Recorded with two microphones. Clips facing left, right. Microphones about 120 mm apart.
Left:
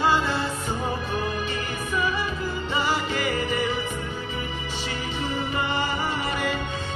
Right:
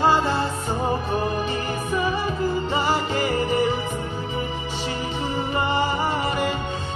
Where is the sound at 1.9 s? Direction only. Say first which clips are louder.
Right 2 dB; 35° right (ahead or behind).